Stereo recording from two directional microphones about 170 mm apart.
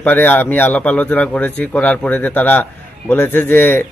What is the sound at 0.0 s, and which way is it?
A man's voice, 10° left (ahead or behind).